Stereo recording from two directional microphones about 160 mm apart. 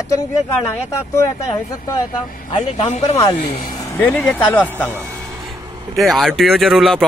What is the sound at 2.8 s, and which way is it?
Speech, 45° left (ahead or behind).